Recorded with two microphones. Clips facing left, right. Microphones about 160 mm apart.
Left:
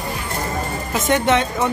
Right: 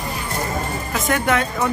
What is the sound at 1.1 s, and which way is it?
Speech, 25° left (ahead or behind).